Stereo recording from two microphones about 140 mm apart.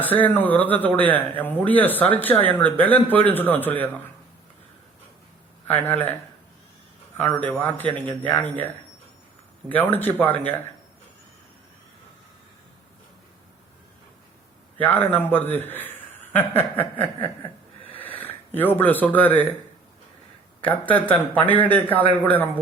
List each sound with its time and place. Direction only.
0.0 s speech: 10° left (ahead or behind)
5.7 s speech: 15° left (ahead or behind)
7.2 s speech: 15° left (ahead or behind)
14.8 s a man's voice: 15° left (ahead or behind)
17.8 s a sound: 10° left (ahead or behind)
18.2 s speech: 15° left (ahead or behind)
20.6 s speech: 10° left (ahead or behind)